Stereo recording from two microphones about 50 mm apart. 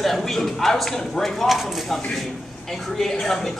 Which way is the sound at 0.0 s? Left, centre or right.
Centre.